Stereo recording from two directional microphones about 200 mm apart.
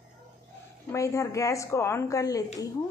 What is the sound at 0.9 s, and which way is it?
A woman's voice, 15° left (ahead or behind).